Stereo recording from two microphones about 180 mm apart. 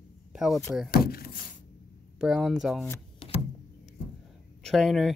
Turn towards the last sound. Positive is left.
turn(degrees=0)  # may be behind; listen again after turning